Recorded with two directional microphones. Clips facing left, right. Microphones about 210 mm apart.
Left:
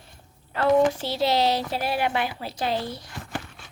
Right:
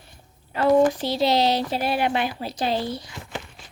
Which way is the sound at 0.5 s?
10° right (ahead or behind).